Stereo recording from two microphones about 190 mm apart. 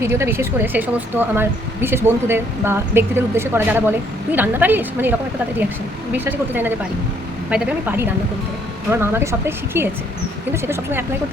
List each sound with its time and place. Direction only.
0.0 s speech: 15° right (ahead or behind)
6.1 s speech: 10° right (ahead or behind)